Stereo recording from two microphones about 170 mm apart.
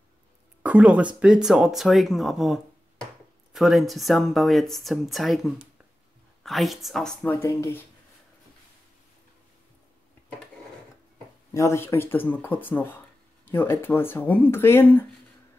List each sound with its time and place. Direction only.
0.6 s speech: 5° right (ahead or behind)
7.3 s speech: 15° left (ahead or behind)
11.5 s speech: 15° left (ahead or behind)